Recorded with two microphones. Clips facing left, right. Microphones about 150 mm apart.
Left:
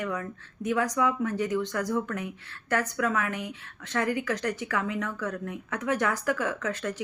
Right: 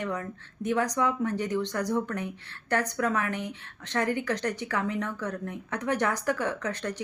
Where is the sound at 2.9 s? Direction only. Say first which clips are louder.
Even; 35° right (ahead or behind).